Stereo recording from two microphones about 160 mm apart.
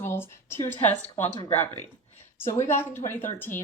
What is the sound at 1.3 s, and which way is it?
Speech, 40° left (ahead or behind).